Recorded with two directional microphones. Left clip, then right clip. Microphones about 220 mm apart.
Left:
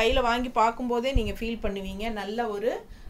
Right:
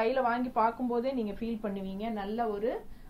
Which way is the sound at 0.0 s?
35° left (ahead or behind).